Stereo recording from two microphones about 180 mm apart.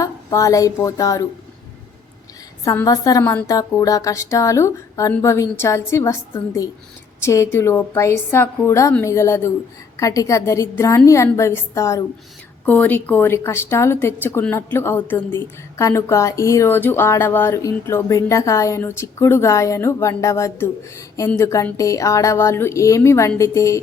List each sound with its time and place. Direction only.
0.0 s speech: 20° left (ahead or behind)
2.6 s speech: 20° left (ahead or behind)